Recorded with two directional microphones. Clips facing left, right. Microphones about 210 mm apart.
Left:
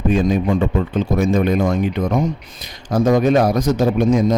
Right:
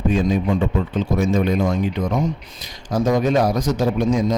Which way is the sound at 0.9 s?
55° left (ahead or behind).